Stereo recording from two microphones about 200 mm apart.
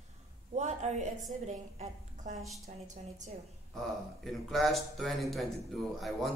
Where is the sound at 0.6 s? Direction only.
35° right (ahead or behind).